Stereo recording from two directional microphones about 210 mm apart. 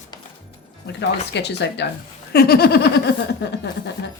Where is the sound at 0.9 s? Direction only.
55° left (ahead or behind).